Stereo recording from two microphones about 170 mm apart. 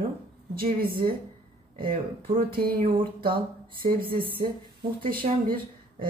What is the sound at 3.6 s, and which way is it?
Speech, 60° right (ahead or behind).